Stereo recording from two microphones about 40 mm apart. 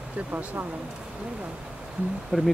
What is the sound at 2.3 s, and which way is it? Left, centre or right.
Speech, centre.